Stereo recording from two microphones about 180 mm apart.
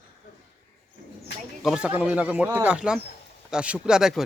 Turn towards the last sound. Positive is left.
turn(degrees=-5)  # may be behind; listen again after turning